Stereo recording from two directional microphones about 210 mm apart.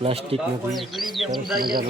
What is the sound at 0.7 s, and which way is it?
Speech, centre (ahead or behind).